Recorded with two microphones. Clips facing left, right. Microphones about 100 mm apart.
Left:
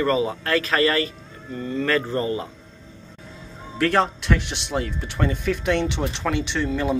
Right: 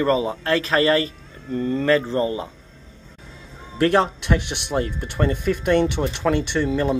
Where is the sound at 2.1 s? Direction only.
20° right (ahead or behind).